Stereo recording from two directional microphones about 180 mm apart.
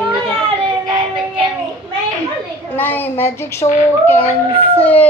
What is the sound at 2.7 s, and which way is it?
Speech, 10° left (ahead or behind).